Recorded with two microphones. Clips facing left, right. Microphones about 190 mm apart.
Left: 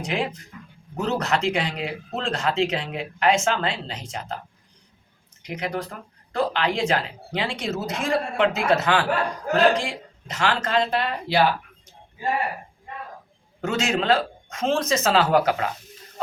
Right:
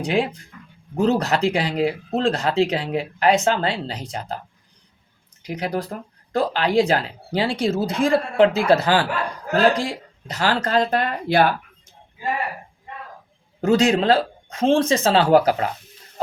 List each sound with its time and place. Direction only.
0.0 s speech: 35° right (ahead or behind)
5.4 s speech: 35° right (ahead or behind); by 11.5 s 50° right (ahead or behind)
13.6 s speech: 35° right (ahead or behind)